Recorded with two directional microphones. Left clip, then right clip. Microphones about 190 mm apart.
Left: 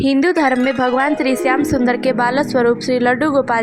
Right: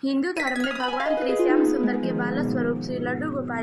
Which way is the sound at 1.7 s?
40° left (ahead or behind).